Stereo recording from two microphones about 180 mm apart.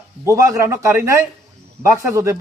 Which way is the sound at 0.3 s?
15° right (ahead or behind).